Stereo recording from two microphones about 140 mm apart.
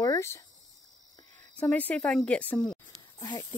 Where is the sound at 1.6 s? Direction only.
10° left (ahead or behind).